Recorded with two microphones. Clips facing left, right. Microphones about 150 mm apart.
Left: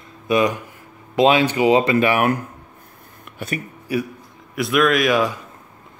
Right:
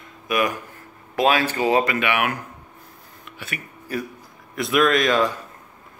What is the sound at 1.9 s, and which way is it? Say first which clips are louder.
Speech: left 6 dB; 35° left (ahead or behind).